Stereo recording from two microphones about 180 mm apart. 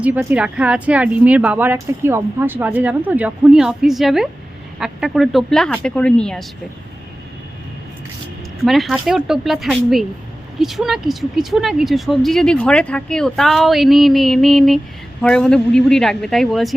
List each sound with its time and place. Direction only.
0.0 s speech: 10° right (ahead or behind)
8.6 s speech: centre (ahead or behind)